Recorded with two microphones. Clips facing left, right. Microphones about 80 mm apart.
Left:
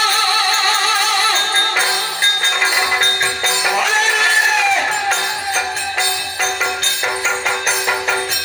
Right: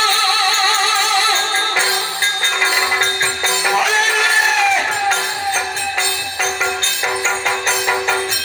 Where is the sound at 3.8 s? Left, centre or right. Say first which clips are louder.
Left 1 dB; centre.